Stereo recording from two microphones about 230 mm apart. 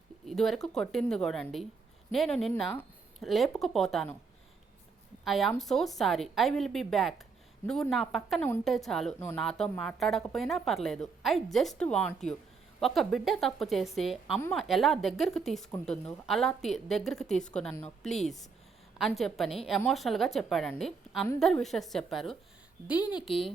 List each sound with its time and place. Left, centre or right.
0.3 s speech: centre
5.2 s speech: centre
23.0 s a woman's voice: centre